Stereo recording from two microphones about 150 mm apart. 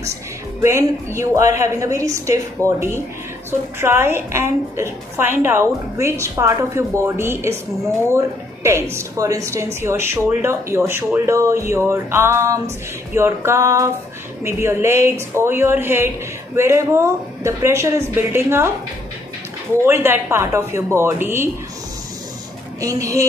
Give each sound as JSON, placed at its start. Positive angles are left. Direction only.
{"t": 0.6, "sound": "a woman's voice", "side_deg": -20}
{"t": 19.9, "sound": "a woman's voice", "side_deg": -15}
{"t": 22.8, "sound": "a woman's voice", "side_deg": -20}